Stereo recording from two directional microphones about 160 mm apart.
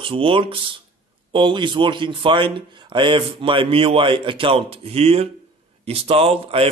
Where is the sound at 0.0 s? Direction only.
35° right (ahead or behind).